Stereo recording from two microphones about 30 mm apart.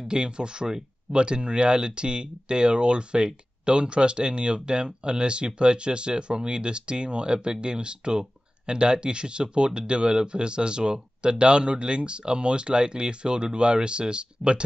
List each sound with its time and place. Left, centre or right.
0.1 s speech: right